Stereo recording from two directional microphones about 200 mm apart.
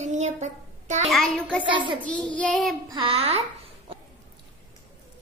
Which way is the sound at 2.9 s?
30° right (ahead or behind).